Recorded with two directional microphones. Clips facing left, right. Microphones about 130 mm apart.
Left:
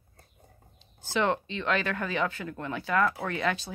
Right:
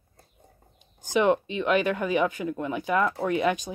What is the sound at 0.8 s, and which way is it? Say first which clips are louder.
Speech: right 4 dB; 15° right (ahead or behind).